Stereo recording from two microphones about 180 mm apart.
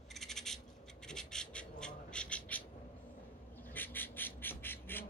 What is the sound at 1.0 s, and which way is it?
Bird, 5° left (ahead or behind).